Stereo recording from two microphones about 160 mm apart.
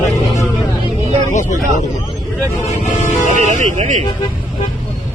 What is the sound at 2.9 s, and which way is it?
Vehicle, 50° left (ahead or behind).